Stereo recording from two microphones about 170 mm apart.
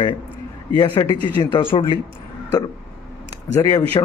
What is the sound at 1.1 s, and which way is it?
Speech, 25° left (ahead or behind).